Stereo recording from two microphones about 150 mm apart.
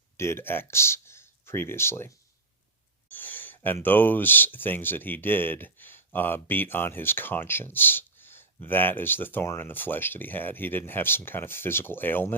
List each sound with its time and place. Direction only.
0.2 s speech: 15° left (ahead or behind)
3.1 s a sound: 10° left (ahead or behind)
3.8 s speech: 10° left (ahead or behind)